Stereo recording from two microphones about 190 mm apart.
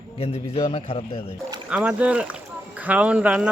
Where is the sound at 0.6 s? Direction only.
30° left (ahead or behind).